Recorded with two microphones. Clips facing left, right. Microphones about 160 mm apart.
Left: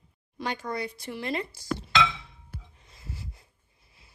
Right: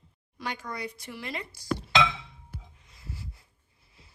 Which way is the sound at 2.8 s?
30° left (ahead or behind).